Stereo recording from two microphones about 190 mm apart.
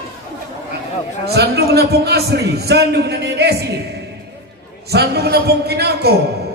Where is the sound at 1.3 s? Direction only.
60° right (ahead or behind).